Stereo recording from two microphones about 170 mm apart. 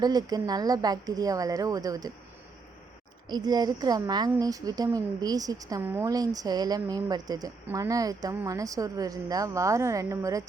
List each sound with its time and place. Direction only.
0.0 s a woman's voice: 25° right (ahead or behind)
3.2 s a woman's voice: 25° right (ahead or behind)